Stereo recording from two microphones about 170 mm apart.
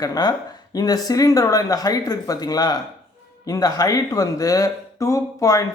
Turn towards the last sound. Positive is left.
turn(degrees=20)  # may be behind; listen again after turning